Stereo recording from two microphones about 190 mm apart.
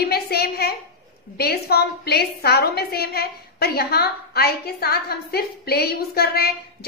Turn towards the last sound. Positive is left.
turn(degrees=55)  # may be behind; listen again after turning